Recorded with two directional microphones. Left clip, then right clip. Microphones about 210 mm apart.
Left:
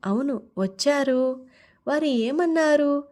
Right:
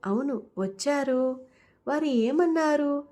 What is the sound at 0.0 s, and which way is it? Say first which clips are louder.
A woman's voice: left 2 dB; 35° left (ahead or behind).